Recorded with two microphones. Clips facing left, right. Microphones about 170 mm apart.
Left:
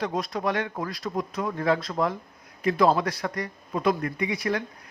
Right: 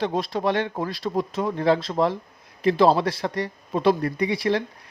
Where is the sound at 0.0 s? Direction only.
30° right (ahead or behind).